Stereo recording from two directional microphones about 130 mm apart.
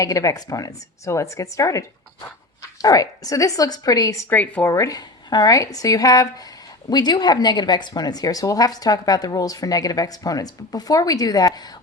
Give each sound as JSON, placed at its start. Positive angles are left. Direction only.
{"t": 0.0, "sound": "a woman's voice", "side_deg": 25}
{"t": 2.8, "sound": "a woman's voice", "side_deg": 30}
{"t": 4.7, "sound": "a woman's voice", "side_deg": 25}